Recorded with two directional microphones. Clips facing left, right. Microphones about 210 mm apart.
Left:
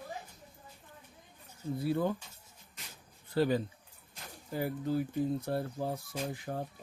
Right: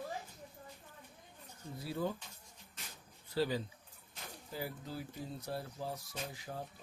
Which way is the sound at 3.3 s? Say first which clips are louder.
Left 6 dB; 55° left (ahead or behind).